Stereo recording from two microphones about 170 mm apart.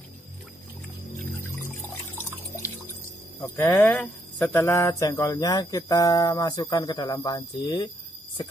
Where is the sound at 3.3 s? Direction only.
15° left (ahead or behind).